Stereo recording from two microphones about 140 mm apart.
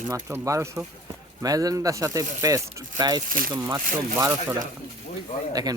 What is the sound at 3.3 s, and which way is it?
Speech, 80° right.